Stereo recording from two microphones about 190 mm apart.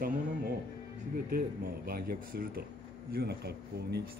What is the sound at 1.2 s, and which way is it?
Speech, 50° right (ahead or behind).